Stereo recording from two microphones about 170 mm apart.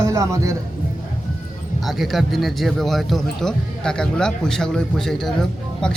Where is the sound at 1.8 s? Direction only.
Centre (ahead or behind).